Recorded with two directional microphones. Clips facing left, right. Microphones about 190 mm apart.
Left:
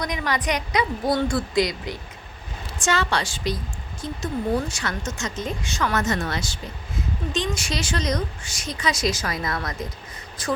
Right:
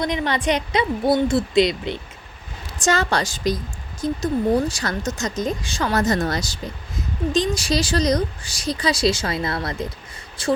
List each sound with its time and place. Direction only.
0.0 s a woman's voice: 25° right (ahead or behind)
2.7 s a woman's voice: 40° right (ahead or behind)